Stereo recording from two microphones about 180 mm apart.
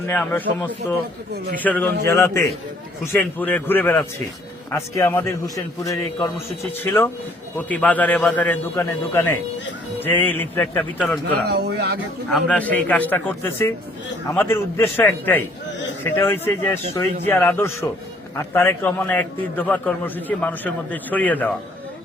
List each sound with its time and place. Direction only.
0.1 s a man's voice: 10° left (ahead or behind)
11.4 s speech: 65° right (ahead or behind)
12.3 s a man's voice: 5° left (ahead or behind)